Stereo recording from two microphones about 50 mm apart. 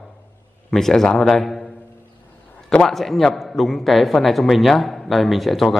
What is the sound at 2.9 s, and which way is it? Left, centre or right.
A man's voice, centre.